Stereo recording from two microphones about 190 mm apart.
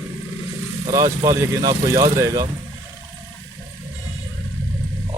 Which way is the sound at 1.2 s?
20° right (ahead or behind).